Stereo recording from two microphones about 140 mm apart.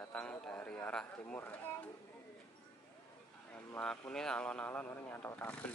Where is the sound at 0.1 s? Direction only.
10° left (ahead or behind).